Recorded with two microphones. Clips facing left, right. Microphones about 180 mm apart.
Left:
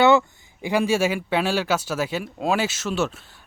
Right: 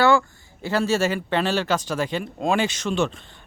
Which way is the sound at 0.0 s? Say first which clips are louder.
Left 2 dB; 20° left (ahead or behind).